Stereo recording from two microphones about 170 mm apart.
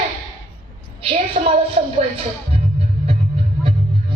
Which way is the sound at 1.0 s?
35° right (ahead or behind).